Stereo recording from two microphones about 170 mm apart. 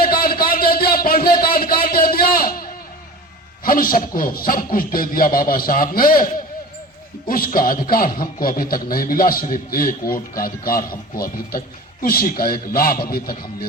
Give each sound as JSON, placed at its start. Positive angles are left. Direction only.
{"t": 0.0, "sound": "a sound", "side_deg": 60}
{"t": 3.6, "sound": "a man's voice", "side_deg": 55}
{"t": 12.0, "sound": "a man's voice", "side_deg": 60}